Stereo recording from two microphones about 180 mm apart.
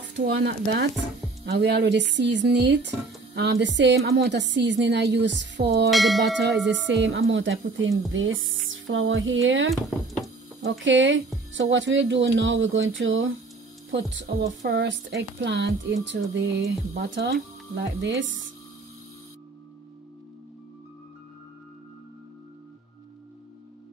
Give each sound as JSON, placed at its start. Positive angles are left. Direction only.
{"t": 0.2, "sound": "speech", "side_deg": -70}
{"t": 5.9, "sound": "speech", "side_deg": 0}
{"t": 6.6, "sound": "speech", "side_deg": -80}
{"t": 9.7, "sound": "speech", "side_deg": 0}
{"t": 10.6, "sound": "speech", "side_deg": -90}
{"t": 14.6, "sound": "speech", "side_deg": -80}